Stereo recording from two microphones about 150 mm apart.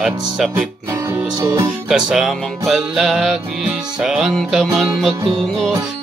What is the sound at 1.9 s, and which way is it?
Music, 5° right (ahead or behind).